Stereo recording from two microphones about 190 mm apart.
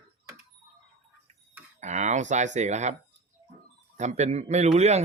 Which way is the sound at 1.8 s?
40° right (ahead or behind).